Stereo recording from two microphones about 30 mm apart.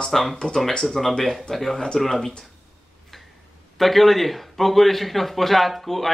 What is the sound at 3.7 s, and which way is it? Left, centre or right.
Speech, centre.